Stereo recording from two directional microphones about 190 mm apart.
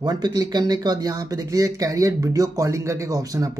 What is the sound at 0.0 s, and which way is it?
Speech, 20° right (ahead or behind).